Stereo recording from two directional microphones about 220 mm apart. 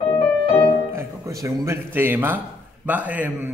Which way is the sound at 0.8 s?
15° right (ahead or behind).